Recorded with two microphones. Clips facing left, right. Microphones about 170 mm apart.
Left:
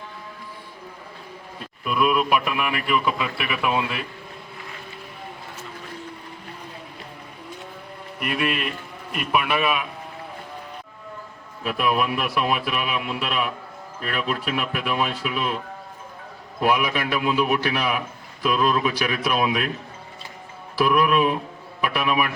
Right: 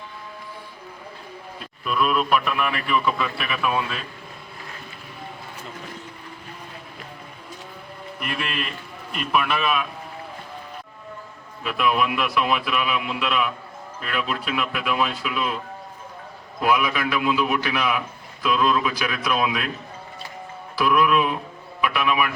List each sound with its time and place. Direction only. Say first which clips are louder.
1.8 s speech: left 1 dB; 10° left (ahead or behind)
8.2 s speech: left 5 dB; 15° left (ahead or behind)
11.6 s a man's voice: even; 40° left (ahead or behind)
16.6 s a man's voice: even; 35° left (ahead or behind)
20.7 s a man's voice: even; 35° left (ahead or behind)